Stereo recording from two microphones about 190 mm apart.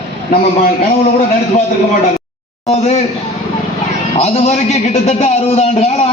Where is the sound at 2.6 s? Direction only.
35° left (ahead or behind).